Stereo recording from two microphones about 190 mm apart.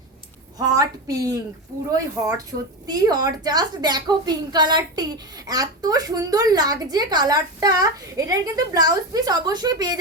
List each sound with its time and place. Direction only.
0.6 s speech: 20° right (ahead or behind)